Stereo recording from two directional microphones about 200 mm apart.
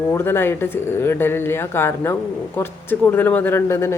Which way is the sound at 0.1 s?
10° left (ahead or behind).